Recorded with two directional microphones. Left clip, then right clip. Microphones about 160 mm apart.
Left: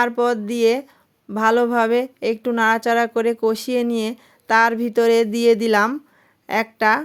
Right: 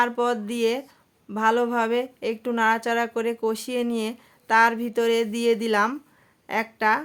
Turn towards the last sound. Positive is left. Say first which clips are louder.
# left 5 dB
turn(degrees=35)  # may be behind; listen again after turning